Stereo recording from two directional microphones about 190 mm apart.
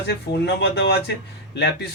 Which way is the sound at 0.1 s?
65° left (ahead or behind).